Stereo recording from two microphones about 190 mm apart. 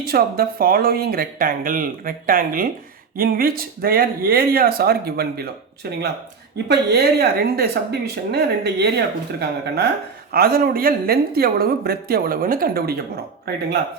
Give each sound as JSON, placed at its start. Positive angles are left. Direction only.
{"t": 0.1, "sound": "speech", "side_deg": -50}
{"t": 6.7, "sound": "a woman's voice", "side_deg": -60}